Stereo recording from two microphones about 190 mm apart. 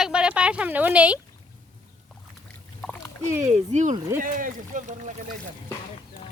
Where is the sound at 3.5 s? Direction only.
35° right (ahead or behind).